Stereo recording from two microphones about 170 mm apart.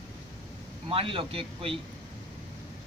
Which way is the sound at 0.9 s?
30° right (ahead or behind).